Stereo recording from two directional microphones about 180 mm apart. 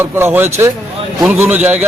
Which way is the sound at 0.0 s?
10° right (ahead or behind).